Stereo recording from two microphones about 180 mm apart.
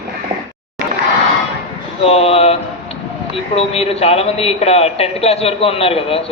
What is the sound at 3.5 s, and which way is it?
A man's voice, 35° left (ahead or behind).